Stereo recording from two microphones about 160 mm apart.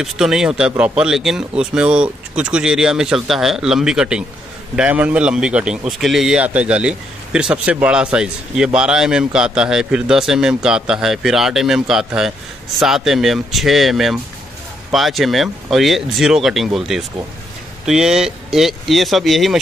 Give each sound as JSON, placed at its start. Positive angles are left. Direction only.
{"t": 0.0, "sound": "a man's voice", "side_deg": -5}